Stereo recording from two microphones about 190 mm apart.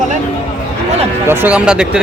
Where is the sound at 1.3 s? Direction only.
10° right (ahead or behind).